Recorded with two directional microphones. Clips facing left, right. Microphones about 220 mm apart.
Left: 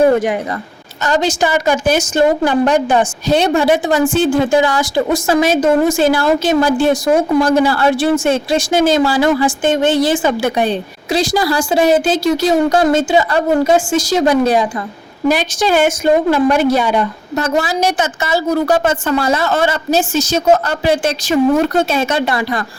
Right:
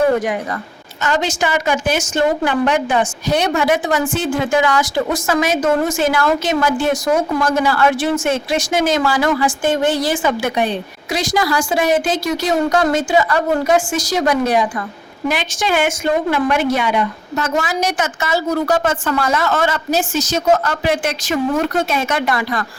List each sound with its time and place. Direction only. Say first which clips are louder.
1.0 s a woman's voice: left 4 dB; 35° left (ahead or behind)